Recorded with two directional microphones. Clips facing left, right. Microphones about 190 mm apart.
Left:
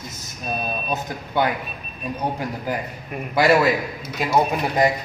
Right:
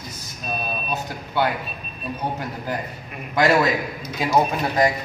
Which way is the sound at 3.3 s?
10° left (ahead or behind).